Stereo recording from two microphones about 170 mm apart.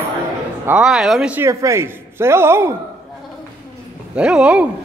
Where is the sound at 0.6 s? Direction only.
5° right (ahead or behind).